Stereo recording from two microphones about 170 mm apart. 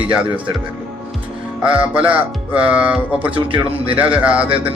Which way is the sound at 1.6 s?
5° right (ahead or behind).